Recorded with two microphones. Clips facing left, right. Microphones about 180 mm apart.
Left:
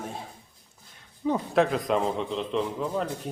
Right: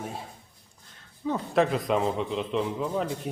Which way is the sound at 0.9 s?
15° left (ahead or behind).